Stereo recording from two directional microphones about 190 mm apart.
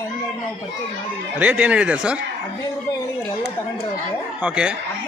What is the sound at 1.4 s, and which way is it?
Speech, 5° right (ahead or behind).